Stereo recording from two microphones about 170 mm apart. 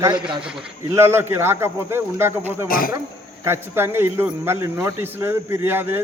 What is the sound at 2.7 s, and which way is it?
Speech, 55° left (ahead or behind).